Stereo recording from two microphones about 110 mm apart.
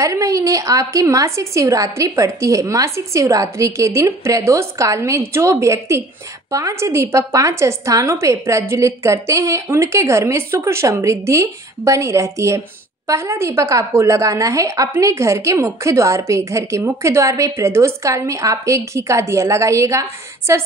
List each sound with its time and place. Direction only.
0.0 s a woman's voice: 30° right (ahead or behind)